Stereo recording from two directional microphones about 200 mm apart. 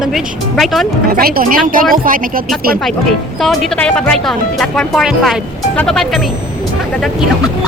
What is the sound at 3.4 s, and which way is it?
Speech, centre (ahead or behind).